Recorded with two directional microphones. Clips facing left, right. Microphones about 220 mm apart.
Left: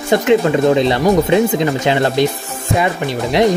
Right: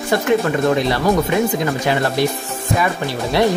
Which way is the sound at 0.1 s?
20° left (ahead or behind).